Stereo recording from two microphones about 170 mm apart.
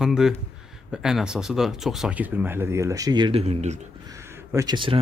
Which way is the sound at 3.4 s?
40° right (ahead or behind).